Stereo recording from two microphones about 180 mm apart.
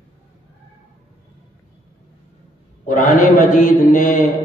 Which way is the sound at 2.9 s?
45° left (ahead or behind).